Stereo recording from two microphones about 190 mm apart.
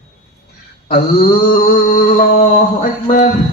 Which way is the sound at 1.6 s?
45° left (ahead or behind).